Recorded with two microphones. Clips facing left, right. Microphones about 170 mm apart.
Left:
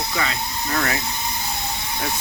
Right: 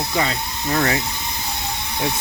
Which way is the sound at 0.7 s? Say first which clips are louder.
Right 4 dB; 15° right (ahead or behind).